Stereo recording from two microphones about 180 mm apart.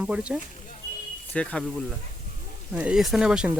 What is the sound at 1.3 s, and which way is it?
Speech, 5° left (ahead or behind).